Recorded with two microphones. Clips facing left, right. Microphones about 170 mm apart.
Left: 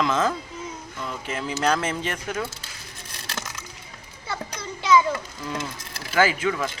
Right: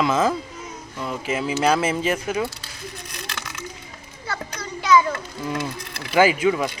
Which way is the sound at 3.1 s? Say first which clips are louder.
Right 1 dB; 35° left (ahead or behind).